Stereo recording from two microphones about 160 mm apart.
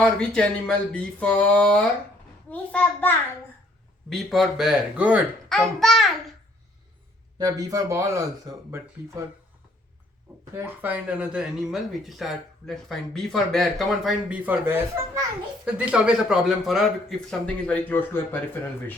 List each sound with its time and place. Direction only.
0.0 s a sound: 5° left (ahead or behind)
4.1 s speech: centre (ahead or behind)
7.3 s speech: 25° right (ahead or behind)
10.5 s speech: 15° right (ahead or behind); by 18.9 s 15° left (ahead or behind)